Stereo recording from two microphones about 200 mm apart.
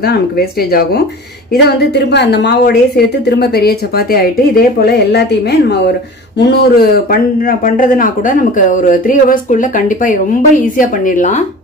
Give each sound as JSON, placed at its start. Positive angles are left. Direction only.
{"t": 0.0, "sound": "speech", "side_deg": 50}